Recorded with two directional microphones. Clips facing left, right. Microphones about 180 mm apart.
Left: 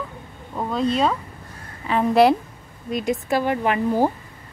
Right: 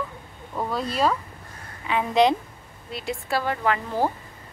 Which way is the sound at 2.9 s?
20° left (ahead or behind).